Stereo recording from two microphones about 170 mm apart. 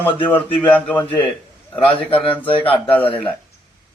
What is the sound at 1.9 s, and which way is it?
Speech, 30° left (ahead or behind).